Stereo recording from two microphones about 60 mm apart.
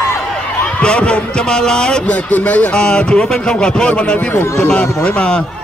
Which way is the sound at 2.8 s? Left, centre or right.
Centre.